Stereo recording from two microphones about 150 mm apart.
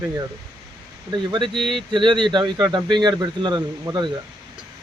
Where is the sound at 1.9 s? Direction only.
30° right (ahead or behind).